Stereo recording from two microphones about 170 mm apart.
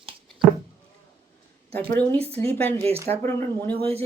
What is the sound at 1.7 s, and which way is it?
Speech, 10° left (ahead or behind).